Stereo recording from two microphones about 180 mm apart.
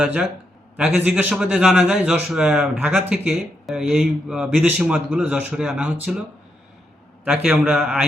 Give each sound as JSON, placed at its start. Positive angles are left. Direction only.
{"t": 0.0, "sound": "a man's voice", "side_deg": -5}
{"t": 7.3, "sound": "a man's voice", "side_deg": -5}